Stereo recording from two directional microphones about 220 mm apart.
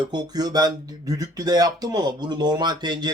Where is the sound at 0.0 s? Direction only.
20° right (ahead or behind).